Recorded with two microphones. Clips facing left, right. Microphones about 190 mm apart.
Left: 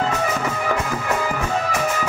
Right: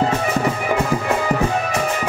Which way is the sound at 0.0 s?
30° right (ahead or behind).